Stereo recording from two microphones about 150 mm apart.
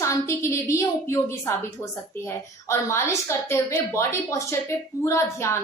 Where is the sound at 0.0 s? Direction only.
20° left (ahead or behind).